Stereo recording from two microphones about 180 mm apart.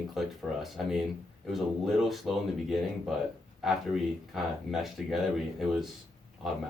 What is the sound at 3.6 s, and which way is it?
Speech, centre (ahead or behind).